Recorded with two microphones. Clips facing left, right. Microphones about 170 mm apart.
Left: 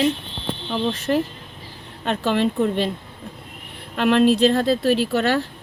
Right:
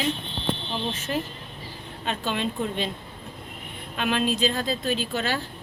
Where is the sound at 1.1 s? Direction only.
60° left (ahead or behind).